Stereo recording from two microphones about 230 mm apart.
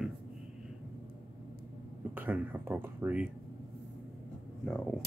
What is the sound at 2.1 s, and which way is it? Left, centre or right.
Speech, centre.